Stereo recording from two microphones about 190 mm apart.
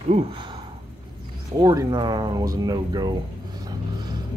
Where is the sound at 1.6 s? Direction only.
20° right (ahead or behind).